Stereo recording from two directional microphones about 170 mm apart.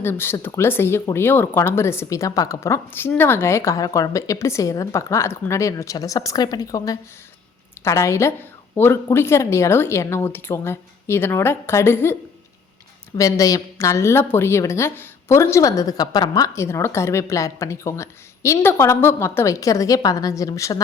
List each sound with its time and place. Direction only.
0.0 s a woman's voice: 15° left (ahead or behind)
13.1 s a woman's voice: 20° left (ahead or behind)